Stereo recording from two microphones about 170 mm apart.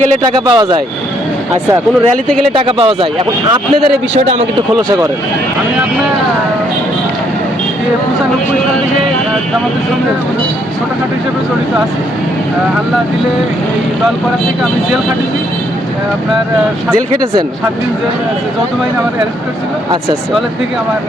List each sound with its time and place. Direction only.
0.3 s speech: 25° right (ahead or behind)
2.6 s speech: 30° right (ahead or behind)